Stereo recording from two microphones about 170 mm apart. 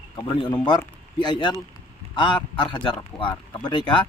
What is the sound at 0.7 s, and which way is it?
A man's voice, 25° left (ahead or behind).